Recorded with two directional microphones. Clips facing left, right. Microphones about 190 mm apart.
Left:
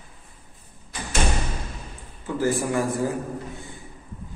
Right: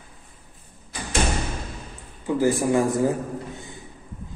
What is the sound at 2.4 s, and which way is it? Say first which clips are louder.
Speech: right 3 dB; 20° right (ahead or behind).